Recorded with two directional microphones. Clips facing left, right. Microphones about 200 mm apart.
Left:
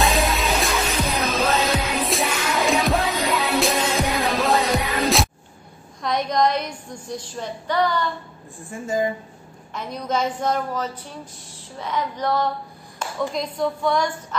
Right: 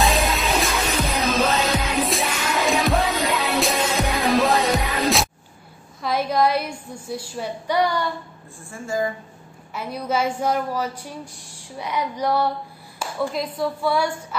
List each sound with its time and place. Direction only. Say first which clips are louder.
0.0 s music: even; centre (ahead or behind)
6.0 s a woman's voice: even; 5° right (ahead or behind)
8.6 s a woman's voice: left 2 dB; 20° left (ahead or behind)
9.8 s a woman's voice: right 1 dB; 10° right (ahead or behind)